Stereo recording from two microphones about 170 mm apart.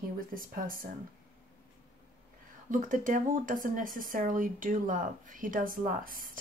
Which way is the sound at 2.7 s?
50° right (ahead or behind).